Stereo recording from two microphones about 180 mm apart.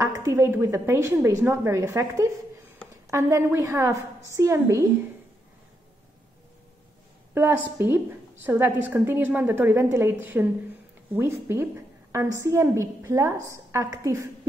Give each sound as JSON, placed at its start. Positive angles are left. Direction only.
{"t": 0.0, "sound": "a woman's voice", "side_deg": -15}
{"t": 7.3, "sound": "a woman's voice", "side_deg": -10}